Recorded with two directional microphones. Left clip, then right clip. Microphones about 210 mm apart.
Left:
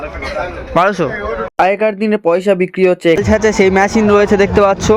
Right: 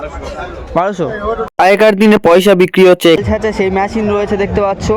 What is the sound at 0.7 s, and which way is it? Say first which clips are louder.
Speech: left 2 dB; 5° right (ahead or behind).